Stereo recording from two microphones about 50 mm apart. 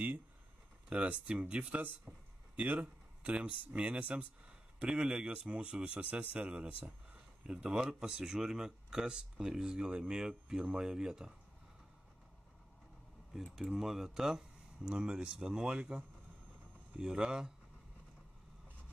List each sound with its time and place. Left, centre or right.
0.8 s speech: right
13.3 s speech: centre
17.0 s speech: centre